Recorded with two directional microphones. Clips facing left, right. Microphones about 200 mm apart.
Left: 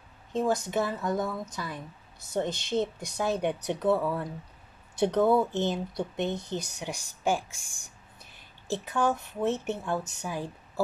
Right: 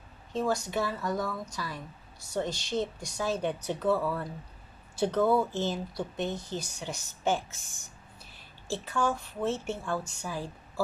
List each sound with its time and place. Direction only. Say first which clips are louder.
0.3 s a woman's voice: left 2 dB; 20° left (ahead or behind)